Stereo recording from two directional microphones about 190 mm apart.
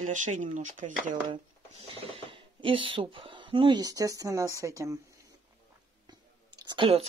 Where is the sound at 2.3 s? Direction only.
25° right (ahead or behind).